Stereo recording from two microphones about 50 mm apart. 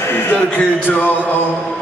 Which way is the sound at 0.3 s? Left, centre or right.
Left.